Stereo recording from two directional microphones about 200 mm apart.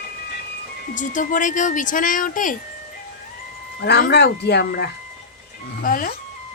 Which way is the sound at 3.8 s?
55° left (ahead or behind).